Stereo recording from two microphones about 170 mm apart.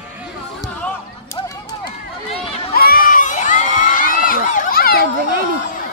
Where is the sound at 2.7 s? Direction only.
60° left (ahead or behind).